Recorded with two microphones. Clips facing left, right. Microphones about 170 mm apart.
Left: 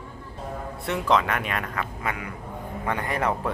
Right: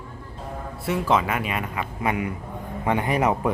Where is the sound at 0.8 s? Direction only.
5° right (ahead or behind).